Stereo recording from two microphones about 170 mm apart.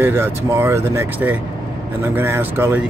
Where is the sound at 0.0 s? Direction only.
15° right (ahead or behind).